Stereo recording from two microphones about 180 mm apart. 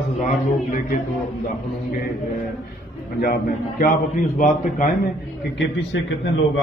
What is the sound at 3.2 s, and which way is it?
Speech, 55° left (ahead or behind).